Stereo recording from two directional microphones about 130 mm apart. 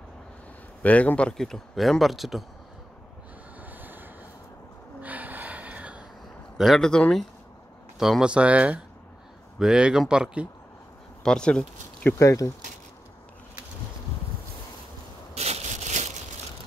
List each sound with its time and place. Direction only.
0.8 s speech: 10° left (ahead or behind)
3.6 s vehicle: 15° right (ahead or behind)
5.0 s gasp: 10° right (ahead or behind)
6.6 s speech: centre (ahead or behind)
11.2 s speech: 5° left (ahead or behind)
12.2 s speech: 25° left (ahead or behind)
15.3 s a sound: 55° right (ahead or behind)